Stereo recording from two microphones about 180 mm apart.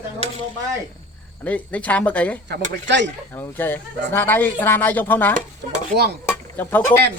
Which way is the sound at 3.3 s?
10° left (ahead or behind).